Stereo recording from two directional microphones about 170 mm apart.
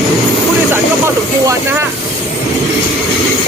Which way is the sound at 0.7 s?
15° right (ahead or behind).